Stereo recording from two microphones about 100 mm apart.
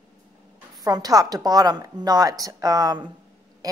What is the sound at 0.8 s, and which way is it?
A woman's voice, 40° right (ahead or behind).